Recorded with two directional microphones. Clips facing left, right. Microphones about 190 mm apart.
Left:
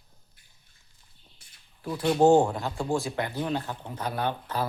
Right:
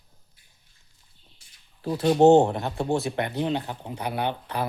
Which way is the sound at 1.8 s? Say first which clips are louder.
Right 4 dB; 25° right (ahead or behind).